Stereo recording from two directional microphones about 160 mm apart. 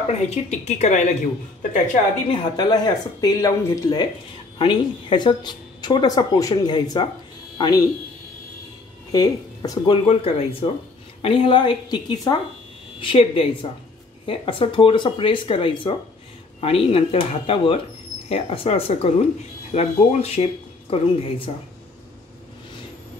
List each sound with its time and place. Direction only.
0.1 s speech: 45° left (ahead or behind)
2.3 s a woman's voice: 30° left (ahead or behind)
9.1 s speech: 25° left (ahead or behind)